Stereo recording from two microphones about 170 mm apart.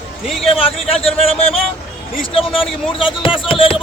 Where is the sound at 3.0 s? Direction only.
30° left (ahead or behind).